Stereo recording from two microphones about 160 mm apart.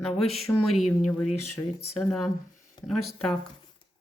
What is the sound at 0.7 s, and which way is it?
A woman's voice, centre (ahead or behind).